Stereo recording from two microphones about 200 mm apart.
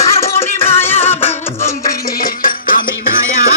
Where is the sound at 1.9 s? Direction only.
50° left (ahead or behind).